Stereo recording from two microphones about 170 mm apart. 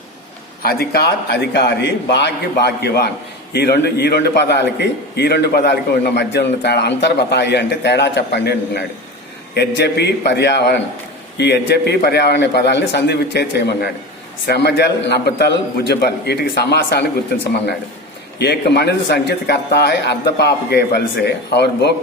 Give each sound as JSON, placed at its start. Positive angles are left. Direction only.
{"t": 0.6, "sound": "a man's voice", "side_deg": 65}
{"t": 18.3, "sound": "a man's voice", "side_deg": 75}